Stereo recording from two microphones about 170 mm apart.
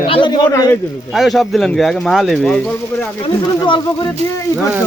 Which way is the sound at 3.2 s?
30° left (ahead or behind).